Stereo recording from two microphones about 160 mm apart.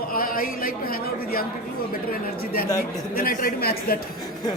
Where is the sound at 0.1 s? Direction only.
65° left (ahead or behind).